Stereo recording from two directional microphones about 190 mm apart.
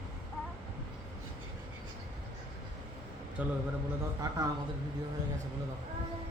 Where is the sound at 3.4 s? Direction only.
5° right (ahead or behind).